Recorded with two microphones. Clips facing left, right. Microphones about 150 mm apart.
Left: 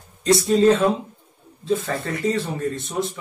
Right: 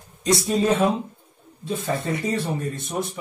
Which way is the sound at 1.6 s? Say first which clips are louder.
Left 2 dB; 15° right (ahead or behind).